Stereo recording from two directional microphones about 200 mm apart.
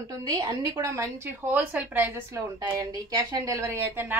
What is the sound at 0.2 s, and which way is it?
A woman's voice, 20° right (ahead or behind).